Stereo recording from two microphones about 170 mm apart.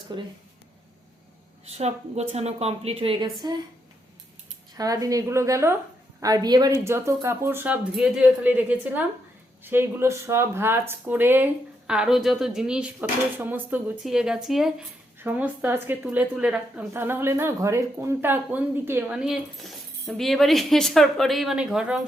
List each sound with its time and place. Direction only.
0.1 s a woman's voice: 25° right (ahead or behind)
1.6 s a woman's voice: 40° right (ahead or behind)
4.8 s a woman's voice: 20° right (ahead or behind); by 22.0 s 5° right (ahead or behind)